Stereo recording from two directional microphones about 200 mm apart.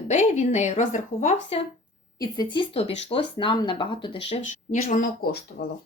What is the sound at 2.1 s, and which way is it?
Speech, 20° left (ahead or behind).